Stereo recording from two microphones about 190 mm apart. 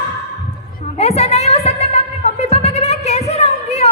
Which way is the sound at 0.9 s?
35° left (ahead or behind).